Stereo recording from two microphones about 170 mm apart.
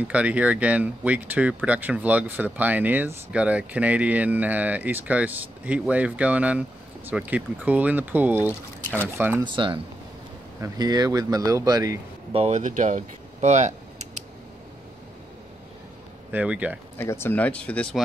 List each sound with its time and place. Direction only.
0.1 s speech: 10° right (ahead or behind)
9.4 s speech: 30° right (ahead or behind)
12.3 s speech: 35° right (ahead or behind)
16.3 s speech: 10° right (ahead or behind)
17.0 s speech: 15° left (ahead or behind)